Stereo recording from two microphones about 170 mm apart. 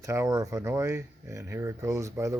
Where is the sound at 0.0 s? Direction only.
20° right (ahead or behind).